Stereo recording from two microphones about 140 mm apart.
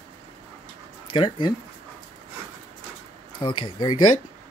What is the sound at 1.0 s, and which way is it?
Speech, 35° left (ahead or behind).